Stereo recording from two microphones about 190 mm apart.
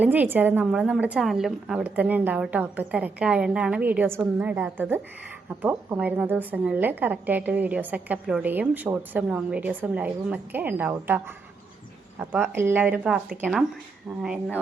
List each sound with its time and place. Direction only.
0.0 s a woman's voice: 10° right (ahead or behind)
12.2 s a woman's voice: 10° right (ahead or behind)